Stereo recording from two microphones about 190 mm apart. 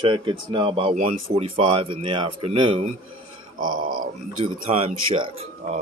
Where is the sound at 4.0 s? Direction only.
30° right (ahead or behind).